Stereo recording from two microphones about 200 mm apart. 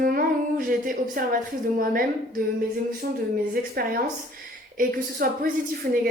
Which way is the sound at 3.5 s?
50° right (ahead or behind).